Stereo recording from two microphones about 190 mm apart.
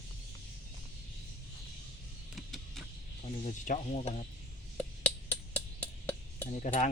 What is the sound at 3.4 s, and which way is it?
Speech, 40° left (ahead or behind).